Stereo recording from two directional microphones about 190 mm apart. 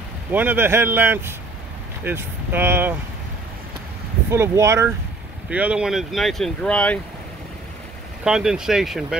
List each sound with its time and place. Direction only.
0.3 s speech: 10° right (ahead or behind)
4.3 s speech: 15° right (ahead or behind); by 7.0 s 5° left (ahead or behind)
8.2 s speech: 5° right (ahead or behind)